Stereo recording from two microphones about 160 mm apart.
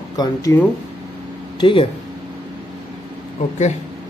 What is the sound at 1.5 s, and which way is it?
Speech, 30° left (ahead or behind).